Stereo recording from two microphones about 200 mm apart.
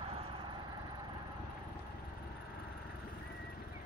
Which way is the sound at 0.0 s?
25° right (ahead or behind).